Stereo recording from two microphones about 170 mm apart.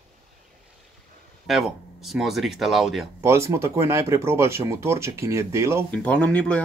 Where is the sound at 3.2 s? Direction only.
15° right (ahead or behind).